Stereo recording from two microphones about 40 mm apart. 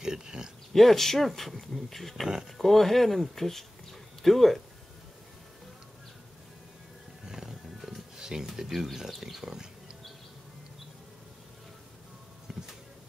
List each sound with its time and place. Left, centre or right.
0.0 s speech: centre
0.7 s speech: centre
7.2 s music: centre
12.5 s a sound: centre